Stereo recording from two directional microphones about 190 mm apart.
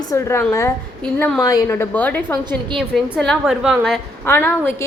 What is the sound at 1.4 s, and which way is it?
A woman's voice, 20° left (ahead or behind).